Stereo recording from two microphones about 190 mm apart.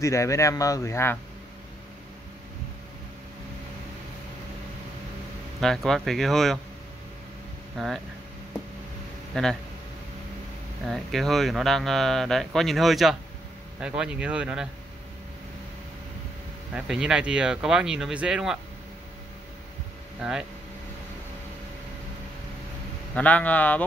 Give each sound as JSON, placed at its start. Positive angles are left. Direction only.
{"t": 0.0, "sound": "speech", "side_deg": 15}
{"t": 5.9, "sound": "speech", "side_deg": 0}
{"t": 7.7, "sound": "speech", "side_deg": 0}
{"t": 9.3, "sound": "speech", "side_deg": 5}
{"t": 10.9, "sound": "speech", "side_deg": 0}
{"t": 16.7, "sound": "speech", "side_deg": -5}
{"t": 20.2, "sound": "speech", "side_deg": -5}
{"t": 23.1, "sound": "speech", "side_deg": 5}